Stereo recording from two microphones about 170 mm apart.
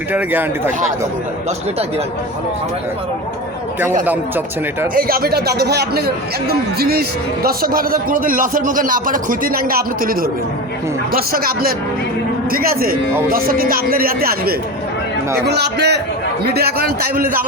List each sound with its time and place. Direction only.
0.1 s speech: 10° right (ahead or behind)
4.0 s speech: 10° right (ahead or behind)
4.9 s a man's voice: 60° right (ahead or behind)
15.4 s a man's voice: 75° right (ahead or behind)